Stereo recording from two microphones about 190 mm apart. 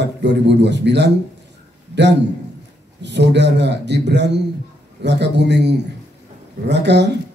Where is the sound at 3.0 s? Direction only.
65° right (ahead or behind).